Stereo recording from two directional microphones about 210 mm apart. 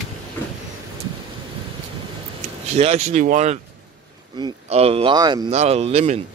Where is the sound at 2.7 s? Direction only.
30° right (ahead or behind).